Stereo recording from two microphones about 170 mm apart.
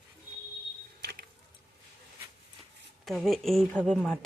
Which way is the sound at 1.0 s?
70° right (ahead or behind).